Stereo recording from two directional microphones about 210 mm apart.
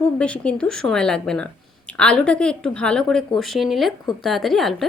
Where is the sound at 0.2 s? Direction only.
5° left (ahead or behind).